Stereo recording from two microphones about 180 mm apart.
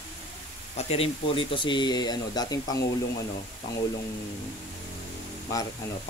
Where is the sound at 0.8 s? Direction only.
35° left (ahead or behind).